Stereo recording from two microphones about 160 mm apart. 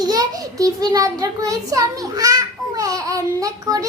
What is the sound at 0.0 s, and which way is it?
A child's voice, 25° right (ahead or behind).